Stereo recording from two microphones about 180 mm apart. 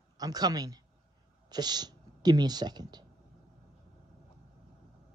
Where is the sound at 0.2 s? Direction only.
20° right (ahead or behind).